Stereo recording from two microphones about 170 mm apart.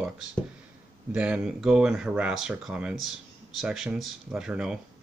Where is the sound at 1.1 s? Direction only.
5° right (ahead or behind).